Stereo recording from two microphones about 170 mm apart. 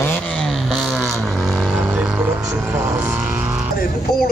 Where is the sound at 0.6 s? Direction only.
Centre (ahead or behind).